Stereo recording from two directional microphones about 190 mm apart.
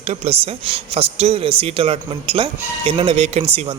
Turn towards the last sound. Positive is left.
turn(degrees=-30)  # may be behind; listen again after turning